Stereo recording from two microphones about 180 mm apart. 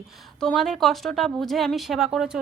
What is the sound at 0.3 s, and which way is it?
Speech, 5° left (ahead or behind).